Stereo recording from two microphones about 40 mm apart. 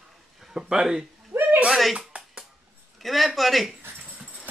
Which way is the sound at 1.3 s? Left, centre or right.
Right.